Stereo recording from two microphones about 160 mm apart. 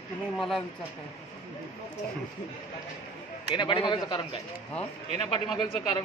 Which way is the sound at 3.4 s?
30° left (ahead or behind).